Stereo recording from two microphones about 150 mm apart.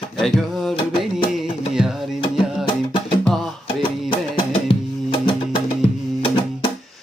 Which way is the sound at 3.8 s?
35° left (ahead or behind).